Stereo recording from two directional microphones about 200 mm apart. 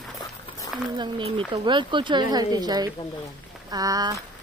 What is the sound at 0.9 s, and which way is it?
A woman's voice, 25° right (ahead or behind).